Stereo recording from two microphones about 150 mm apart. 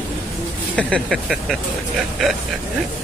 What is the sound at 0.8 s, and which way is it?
Speech, 5° left (ahead or behind).